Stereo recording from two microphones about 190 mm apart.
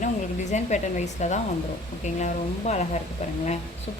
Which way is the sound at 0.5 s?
40° left (ahead or behind).